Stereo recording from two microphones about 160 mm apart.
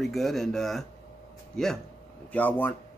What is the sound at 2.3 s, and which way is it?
Speech, 10° left (ahead or behind).